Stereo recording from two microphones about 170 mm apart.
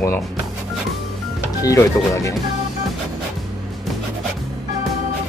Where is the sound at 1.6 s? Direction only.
20° left (ahead or behind).